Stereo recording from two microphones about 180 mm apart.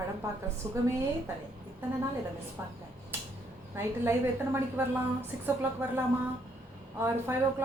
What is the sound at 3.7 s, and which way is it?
A woman's voice, 15° right (ahead or behind).